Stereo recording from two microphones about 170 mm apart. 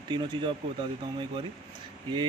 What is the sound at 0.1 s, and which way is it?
Speech, 25° right (ahead or behind).